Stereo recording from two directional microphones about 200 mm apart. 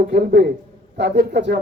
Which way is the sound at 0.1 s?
55° right (ahead or behind).